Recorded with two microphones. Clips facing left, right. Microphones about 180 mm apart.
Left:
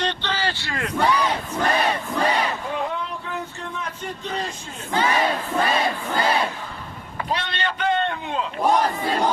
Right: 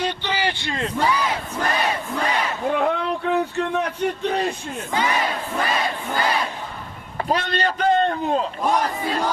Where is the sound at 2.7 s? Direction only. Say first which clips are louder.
Right 6 dB; 65° right (ahead or behind).